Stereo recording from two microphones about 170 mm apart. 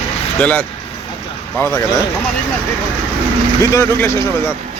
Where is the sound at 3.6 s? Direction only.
15° left (ahead or behind).